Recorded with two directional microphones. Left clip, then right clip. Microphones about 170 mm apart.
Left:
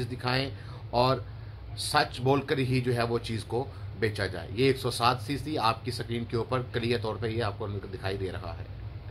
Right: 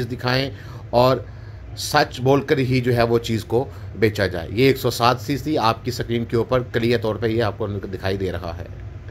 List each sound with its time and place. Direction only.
0.0 s speech: 15° right (ahead or behind)